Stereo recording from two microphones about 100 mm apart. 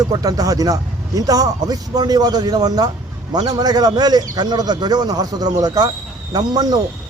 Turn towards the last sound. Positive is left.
turn(degrees=-45)  # may be behind; listen again after turning